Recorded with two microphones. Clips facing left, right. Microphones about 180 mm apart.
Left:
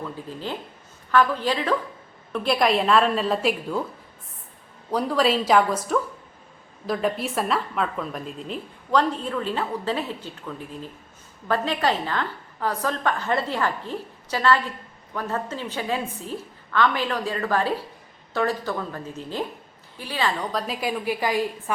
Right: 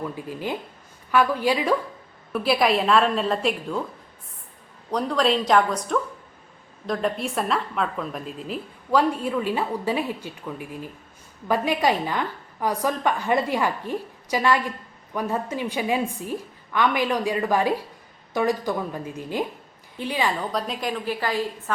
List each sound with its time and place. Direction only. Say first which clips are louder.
0.0 s a woman's voice: right 2 dB; 15° right (ahead or behind); by 3.8 s 5° left (ahead or behind)
4.9 s a woman's voice: even; 5° left (ahead or behind); by 20.3 s 15° right (ahead or behind)
20.5 s a woman's voice: even; centre (ahead or behind)